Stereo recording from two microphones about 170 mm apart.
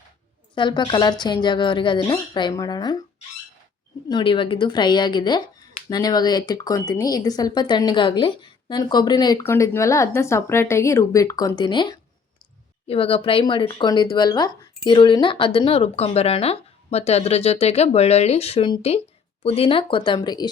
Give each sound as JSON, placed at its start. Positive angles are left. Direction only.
{"t": 0.5, "sound": "speech", "side_deg": 25}
{"t": 4.1, "sound": "speech", "side_deg": 30}